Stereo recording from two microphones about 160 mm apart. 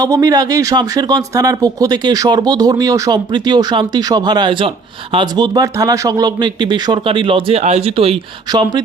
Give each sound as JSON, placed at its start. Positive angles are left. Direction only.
{"t": 0.0, "sound": "speech", "side_deg": -20}